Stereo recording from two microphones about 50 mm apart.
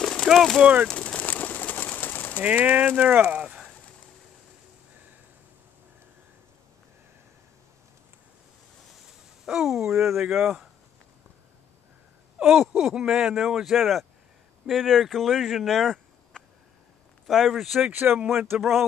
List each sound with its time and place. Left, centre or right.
0.0 s a sound: centre
1.2 s bird: left
2.4 s speech: right
3.4 s a sound: centre
9.5 s a sound: centre
10.3 s speech: centre
12.4 s speech: centre
13.7 s speech: centre
17.3 s speech: centre
17.9 s speech: right
18.6 s speech: centre